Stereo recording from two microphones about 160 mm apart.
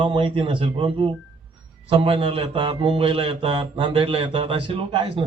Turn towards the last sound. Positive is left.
turn(degrees=-35)  # may be behind; listen again after turning